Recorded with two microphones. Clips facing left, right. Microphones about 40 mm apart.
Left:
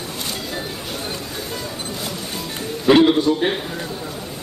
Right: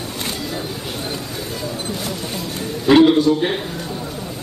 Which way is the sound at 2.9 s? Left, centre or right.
Centre.